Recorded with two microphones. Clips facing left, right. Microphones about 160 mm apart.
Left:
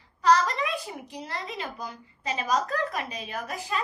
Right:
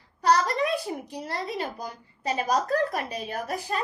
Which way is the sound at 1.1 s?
40° right (ahead or behind).